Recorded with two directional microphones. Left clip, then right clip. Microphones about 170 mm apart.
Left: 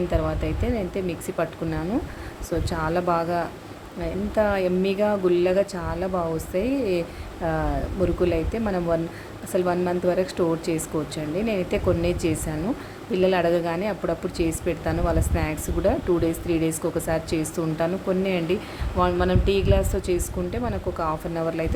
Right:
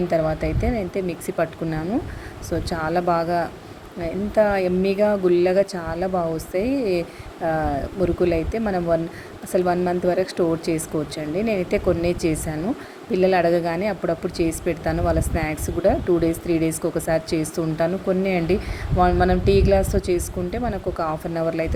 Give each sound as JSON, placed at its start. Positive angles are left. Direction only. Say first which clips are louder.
{"t": 0.1, "sound": "a woman's voice", "louder": "right 5 dB", "side_deg": -15}